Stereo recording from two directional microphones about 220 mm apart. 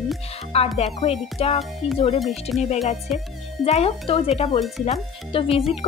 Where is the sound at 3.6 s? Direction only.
30° left (ahead or behind).